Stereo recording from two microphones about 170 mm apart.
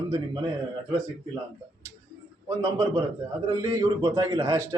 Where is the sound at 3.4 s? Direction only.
20° right (ahead or behind).